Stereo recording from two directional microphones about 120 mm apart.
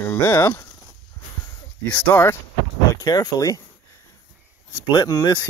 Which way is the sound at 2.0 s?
15° left (ahead or behind).